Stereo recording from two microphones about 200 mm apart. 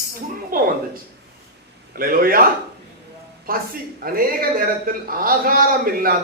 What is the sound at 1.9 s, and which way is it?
Speech, 45° right (ahead or behind).